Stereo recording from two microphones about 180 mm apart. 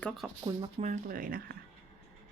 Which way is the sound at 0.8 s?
40° right (ahead or behind).